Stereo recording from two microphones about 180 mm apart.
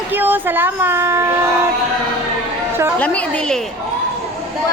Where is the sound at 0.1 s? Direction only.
10° right (ahead or behind).